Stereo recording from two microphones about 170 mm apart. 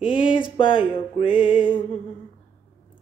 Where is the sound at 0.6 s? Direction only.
30° left (ahead or behind).